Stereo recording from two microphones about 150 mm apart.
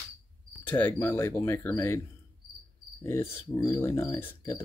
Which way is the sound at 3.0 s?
15° left (ahead or behind).